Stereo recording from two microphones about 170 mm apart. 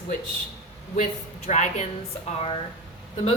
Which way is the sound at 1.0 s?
45° left (ahead or behind).